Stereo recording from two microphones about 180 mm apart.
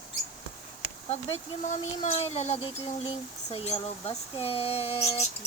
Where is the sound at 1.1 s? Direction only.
40° left (ahead or behind).